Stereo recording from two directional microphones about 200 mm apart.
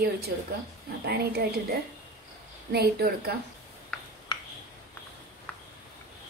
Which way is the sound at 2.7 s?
50° right (ahead or behind).